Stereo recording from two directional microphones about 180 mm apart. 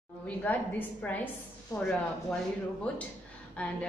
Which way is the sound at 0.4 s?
10° left (ahead or behind).